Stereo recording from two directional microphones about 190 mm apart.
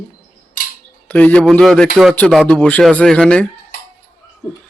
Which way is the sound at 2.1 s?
5° left (ahead or behind).